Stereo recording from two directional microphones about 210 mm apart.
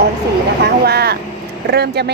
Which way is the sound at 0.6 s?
50° right (ahead or behind).